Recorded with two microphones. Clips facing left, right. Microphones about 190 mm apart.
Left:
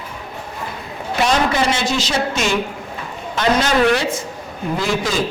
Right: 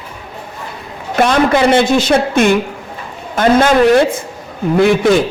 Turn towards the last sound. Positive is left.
turn(degrees=-60)  # may be behind; listen again after turning